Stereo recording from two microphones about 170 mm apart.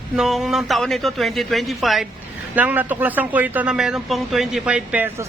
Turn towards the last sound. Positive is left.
turn(degrees=-10)  # may be behind; listen again after turning